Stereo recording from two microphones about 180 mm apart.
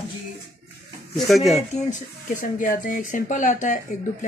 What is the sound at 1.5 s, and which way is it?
Speech, 45° left (ahead or behind).